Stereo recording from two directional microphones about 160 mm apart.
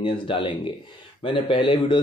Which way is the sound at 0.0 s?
30° left (ahead or behind).